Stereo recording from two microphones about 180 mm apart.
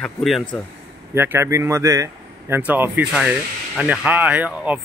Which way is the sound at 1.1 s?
15° right (ahead or behind).